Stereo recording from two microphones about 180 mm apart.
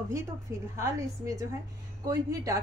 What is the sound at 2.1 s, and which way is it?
Speech, 20° right (ahead or behind).